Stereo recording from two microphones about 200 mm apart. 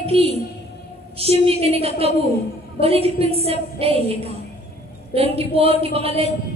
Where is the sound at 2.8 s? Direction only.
30° right (ahead or behind).